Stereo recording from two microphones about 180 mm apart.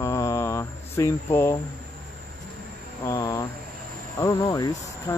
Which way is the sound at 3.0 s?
20° left (ahead or behind).